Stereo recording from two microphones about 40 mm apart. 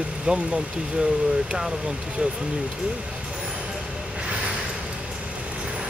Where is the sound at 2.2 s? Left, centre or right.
Right.